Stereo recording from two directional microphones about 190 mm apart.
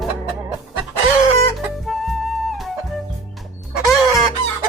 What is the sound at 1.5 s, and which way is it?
Flute, centre (ahead or behind).